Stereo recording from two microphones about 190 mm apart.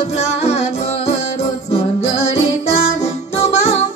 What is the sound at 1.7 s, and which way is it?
Music, 35° left (ahead or behind).